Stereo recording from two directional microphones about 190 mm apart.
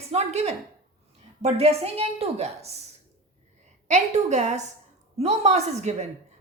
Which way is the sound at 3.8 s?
35° right (ahead or behind).